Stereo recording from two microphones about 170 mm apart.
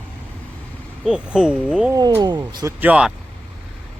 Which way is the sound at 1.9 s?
20° right (ahead or behind).